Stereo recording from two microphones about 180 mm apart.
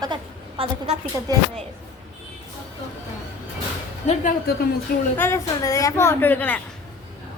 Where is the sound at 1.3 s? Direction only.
20° right (ahead or behind).